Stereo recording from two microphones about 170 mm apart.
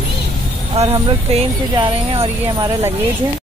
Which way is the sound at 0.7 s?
35° right (ahead or behind).